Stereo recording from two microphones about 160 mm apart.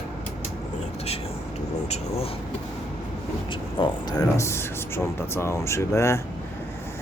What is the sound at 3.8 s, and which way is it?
Speech, 25° left (ahead or behind).